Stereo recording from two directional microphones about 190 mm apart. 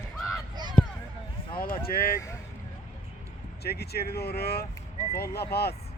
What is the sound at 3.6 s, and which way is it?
Speech, 55° left (ahead or behind).